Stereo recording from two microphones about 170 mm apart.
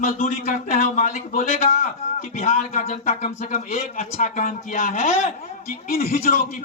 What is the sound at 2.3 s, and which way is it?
Speech, 45° left (ahead or behind).